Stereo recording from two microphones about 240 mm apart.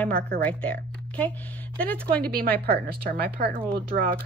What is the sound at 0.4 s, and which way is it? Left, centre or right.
A woman's voice, centre.